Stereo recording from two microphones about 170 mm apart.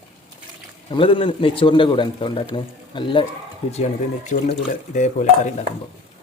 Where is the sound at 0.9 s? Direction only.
30° left (ahead or behind).